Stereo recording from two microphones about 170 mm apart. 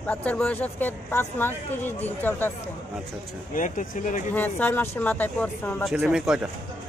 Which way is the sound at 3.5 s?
50° left (ahead or behind).